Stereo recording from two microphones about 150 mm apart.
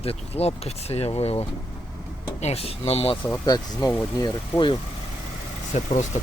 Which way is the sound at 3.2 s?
20° left (ahead or behind).